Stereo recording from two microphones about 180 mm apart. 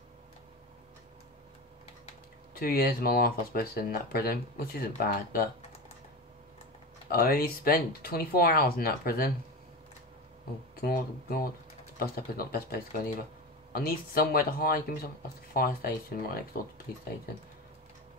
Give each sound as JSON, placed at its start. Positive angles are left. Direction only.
{"t": 2.5, "sound": "speech", "side_deg": 55}
{"t": 7.1, "sound": "speech", "side_deg": 55}
{"t": 10.8, "sound": "speech", "side_deg": 55}